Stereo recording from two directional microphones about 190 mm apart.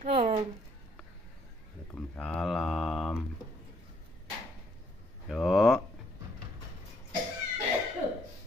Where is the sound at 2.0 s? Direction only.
5° left (ahead or behind).